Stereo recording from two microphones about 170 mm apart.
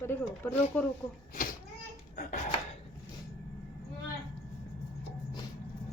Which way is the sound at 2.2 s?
50° left (ahead or behind).